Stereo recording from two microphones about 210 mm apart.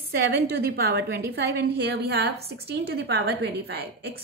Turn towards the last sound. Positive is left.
turn(degrees=-50)  # may be behind; listen again after turning